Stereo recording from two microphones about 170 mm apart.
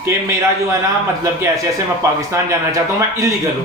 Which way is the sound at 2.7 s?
20° right (ahead or behind).